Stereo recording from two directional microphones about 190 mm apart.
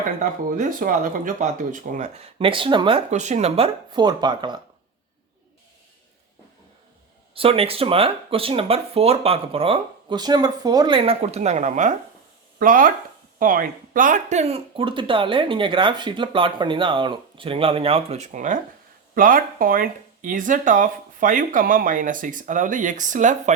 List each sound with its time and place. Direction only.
0.2 s speech: 45° right (ahead or behind); by 4.6 s 25° right (ahead or behind)
7.3 s speech: 30° right (ahead or behind)